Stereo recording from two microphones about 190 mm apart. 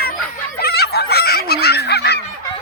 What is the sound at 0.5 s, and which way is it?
Chicken, 55° left (ahead or behind).